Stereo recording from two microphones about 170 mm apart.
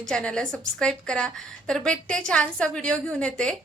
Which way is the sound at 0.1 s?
5° left (ahead or behind).